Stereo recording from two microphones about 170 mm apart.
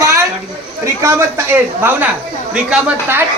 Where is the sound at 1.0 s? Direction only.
15° right (ahead or behind).